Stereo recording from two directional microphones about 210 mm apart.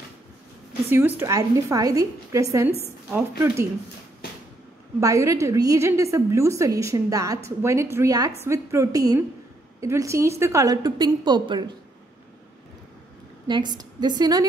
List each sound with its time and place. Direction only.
0.8 s a woman's voice: 10° right (ahead or behind)
5.0 s a woman's voice: 15° right (ahead or behind)
13.5 s a woman's voice: 20° right (ahead or behind)